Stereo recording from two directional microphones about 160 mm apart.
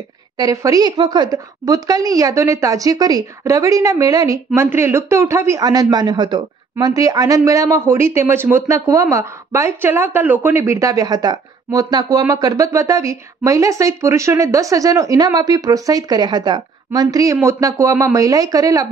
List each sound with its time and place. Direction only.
0.4 s a woman's voice: 20° right (ahead or behind)